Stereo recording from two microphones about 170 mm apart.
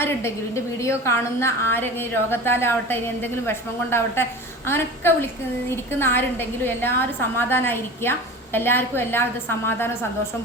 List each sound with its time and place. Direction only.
0.0 s a woman's voice: 15° left (ahead or behind)